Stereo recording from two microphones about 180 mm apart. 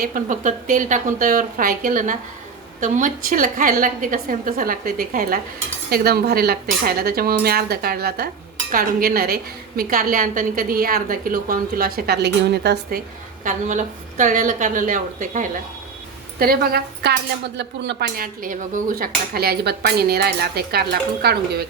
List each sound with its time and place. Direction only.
0.0 s a woman's voice: 45° right (ahead or behind); by 13.0 s 70° right (ahead or behind)
13.4 s a woman's voice: 45° right (ahead or behind)
16.4 s speech: 55° right (ahead or behind)